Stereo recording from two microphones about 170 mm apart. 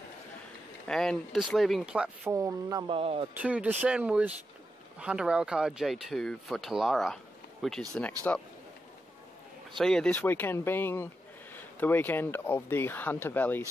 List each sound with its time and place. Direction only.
0.8 s speech: 5° left (ahead or behind)
2.3 s speech: 20° right (ahead or behind)
2.9 s speech: 35° right (ahead or behind)
3.3 s speech: 10° right (ahead or behind)
8.3 s speech: 10° left (ahead or behind)
9.8 s speech: 5° left (ahead or behind)